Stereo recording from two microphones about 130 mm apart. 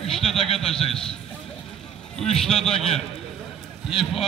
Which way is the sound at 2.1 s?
5° left (ahead or behind).